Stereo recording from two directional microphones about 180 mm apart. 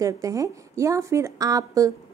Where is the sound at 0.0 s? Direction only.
20° right (ahead or behind).